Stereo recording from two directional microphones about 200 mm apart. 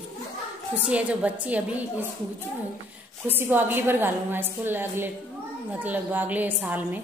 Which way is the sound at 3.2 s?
10° right (ahead or behind).